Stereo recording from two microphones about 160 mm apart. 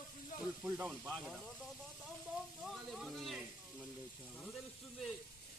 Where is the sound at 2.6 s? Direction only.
Centre (ahead or behind).